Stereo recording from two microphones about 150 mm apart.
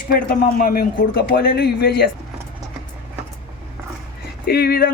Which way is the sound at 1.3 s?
90° left.